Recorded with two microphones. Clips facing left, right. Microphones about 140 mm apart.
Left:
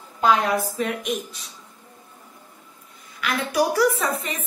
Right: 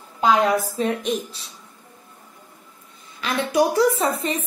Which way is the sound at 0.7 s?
30° right (ahead or behind).